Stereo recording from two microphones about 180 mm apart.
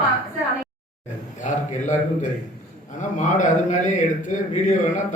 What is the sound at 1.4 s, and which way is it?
Speech, 45° left (ahead or behind).